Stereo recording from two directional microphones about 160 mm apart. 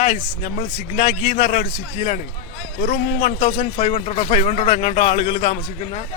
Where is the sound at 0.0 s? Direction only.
50° left (ahead or behind).